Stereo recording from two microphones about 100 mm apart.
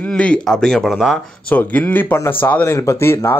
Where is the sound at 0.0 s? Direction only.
10° left (ahead or behind).